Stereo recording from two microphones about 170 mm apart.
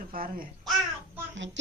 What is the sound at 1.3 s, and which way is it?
Speech, 90° right.